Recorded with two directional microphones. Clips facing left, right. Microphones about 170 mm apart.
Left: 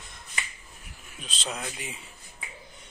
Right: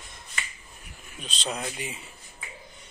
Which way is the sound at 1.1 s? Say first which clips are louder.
Right 3 dB; 5° left (ahead or behind).